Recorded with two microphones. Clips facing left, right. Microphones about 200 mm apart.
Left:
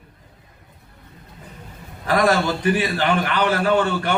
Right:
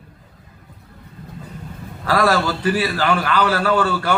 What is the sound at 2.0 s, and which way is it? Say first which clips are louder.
A man's voice: even; 20° left (ahead or behind).